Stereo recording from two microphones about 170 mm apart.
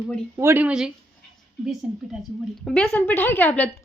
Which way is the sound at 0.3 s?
15° right (ahead or behind).